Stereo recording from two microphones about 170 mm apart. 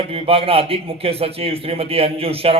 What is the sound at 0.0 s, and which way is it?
A man's voice, 35° right (ahead or behind).